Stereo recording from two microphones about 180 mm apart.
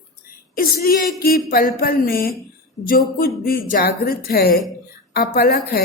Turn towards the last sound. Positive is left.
turn(degrees=60)  # may be behind; listen again after turning